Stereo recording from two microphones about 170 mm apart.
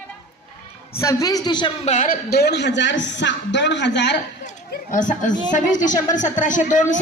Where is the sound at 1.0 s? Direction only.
20° left (ahead or behind).